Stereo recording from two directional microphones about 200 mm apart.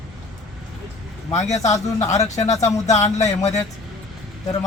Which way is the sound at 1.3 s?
35° left (ahead or behind).